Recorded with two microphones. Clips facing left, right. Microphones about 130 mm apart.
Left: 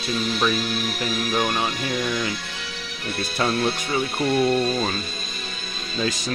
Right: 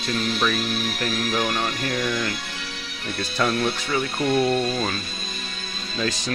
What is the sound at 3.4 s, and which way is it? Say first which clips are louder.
Speech: left 1 dB; 25° left (ahead or behind).